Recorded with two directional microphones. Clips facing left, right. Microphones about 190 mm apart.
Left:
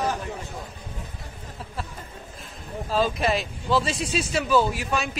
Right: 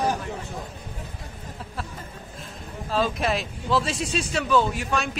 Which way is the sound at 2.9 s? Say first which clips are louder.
Left 1 dB; centre (ahead or behind).